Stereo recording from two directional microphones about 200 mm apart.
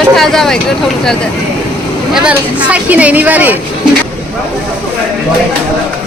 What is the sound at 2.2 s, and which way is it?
Speech, 5° right (ahead or behind).